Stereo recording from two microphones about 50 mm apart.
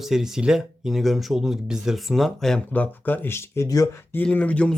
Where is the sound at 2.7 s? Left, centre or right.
Left.